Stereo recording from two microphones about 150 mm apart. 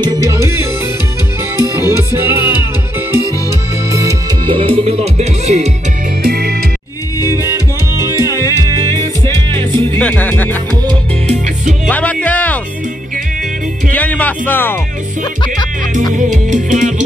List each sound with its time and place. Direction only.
0.0 s music: 25° right (ahead or behind)
4.5 s speech: 35° right (ahead or behind)
6.2 s music: 90° right
7.2 s music: 25° left (ahead or behind)
7.9 s music: 20° right (ahead or behind)
9.9 s music: 10° left (ahead or behind)
11.9 s music: 10° left (ahead or behind)
13.9 s speech: 10° left (ahead or behind)
16.2 s speech: 55° right (ahead or behind)